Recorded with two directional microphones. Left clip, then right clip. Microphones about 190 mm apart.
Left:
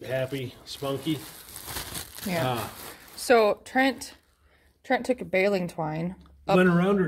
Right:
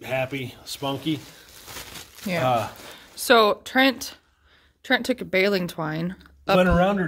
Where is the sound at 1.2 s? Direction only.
50° left (ahead or behind).